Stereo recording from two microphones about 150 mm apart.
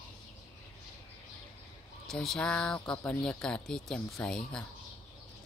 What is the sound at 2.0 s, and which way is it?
Speech, 5° left (ahead or behind).